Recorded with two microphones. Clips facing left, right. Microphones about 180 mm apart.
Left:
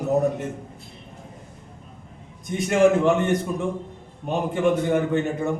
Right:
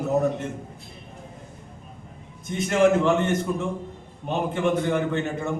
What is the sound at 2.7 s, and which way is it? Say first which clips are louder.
Speech: left 2 dB; 15° left (ahead or behind).